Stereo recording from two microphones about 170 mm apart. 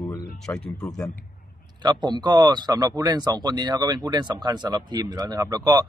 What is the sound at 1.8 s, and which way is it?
Speech, 25° right (ahead or behind).